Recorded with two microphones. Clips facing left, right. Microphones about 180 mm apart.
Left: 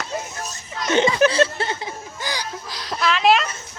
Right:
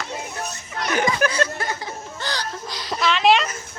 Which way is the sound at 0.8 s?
25° left (ahead or behind).